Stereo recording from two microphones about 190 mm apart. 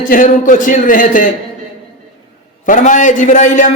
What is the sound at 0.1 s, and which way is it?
Speech, 45° left (ahead or behind).